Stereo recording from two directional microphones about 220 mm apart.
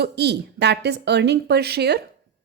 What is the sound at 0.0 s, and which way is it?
A woman's voice, 50° right (ahead or behind).